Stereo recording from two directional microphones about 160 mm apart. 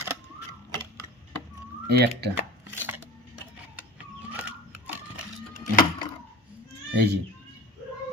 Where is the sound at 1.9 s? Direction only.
90° right.